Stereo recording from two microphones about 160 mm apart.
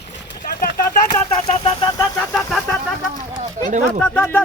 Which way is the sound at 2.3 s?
5° left (ahead or behind).